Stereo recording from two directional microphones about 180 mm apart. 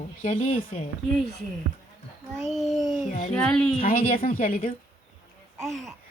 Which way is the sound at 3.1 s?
40° left (ahead or behind).